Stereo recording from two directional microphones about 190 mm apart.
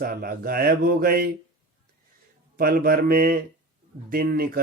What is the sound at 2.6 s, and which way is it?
Speech, 50° right (ahead or behind).